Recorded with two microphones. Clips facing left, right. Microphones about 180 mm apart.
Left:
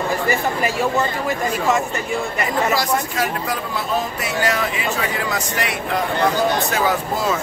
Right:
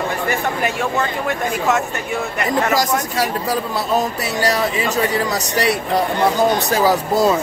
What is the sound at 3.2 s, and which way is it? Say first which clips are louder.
Speech: right 3 dB; 35° right (ahead or behind).